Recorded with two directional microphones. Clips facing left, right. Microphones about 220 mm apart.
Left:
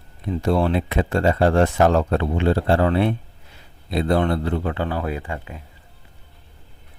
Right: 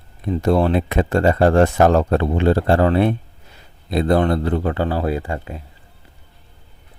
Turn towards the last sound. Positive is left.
turn(degrees=-40)  # may be behind; listen again after turning